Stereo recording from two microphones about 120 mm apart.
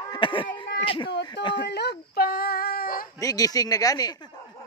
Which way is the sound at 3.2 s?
30° left (ahead or behind).